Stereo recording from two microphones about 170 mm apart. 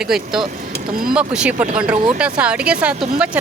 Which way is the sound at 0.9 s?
60° right (ahead or behind).